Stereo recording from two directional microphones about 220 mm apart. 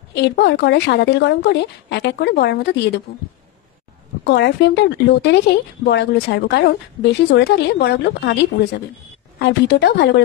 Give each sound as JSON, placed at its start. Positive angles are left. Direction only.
{"t": 0.1, "sound": "speech", "side_deg": 50}
{"t": 4.2, "sound": "speech", "side_deg": 50}